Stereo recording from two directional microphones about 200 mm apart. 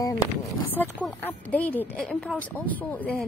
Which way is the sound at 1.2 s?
10° left (ahead or behind).